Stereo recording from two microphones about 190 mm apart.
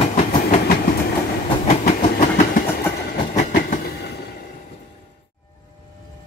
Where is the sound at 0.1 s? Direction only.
40° left (ahead or behind).